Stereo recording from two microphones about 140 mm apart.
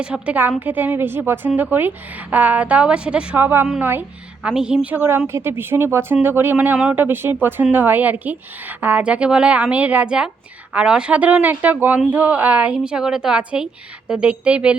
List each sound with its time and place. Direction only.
0.0 s speech: 10° right (ahead or behind)